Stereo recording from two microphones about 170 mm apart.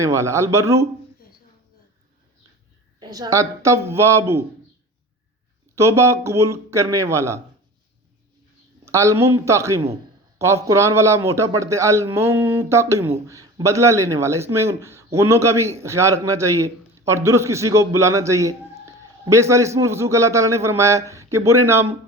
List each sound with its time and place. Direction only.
0.0 s a man's voice: 15° right (ahead or behind)
3.0 s a man's voice: 20° right (ahead or behind)
5.7 s a man's voice: 15° right (ahead or behind)
8.8 s a man's voice: 15° right (ahead or behind)